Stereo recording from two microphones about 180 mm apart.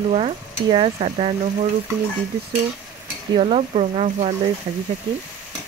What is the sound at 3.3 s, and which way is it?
Stir, 30° right (ahead or behind).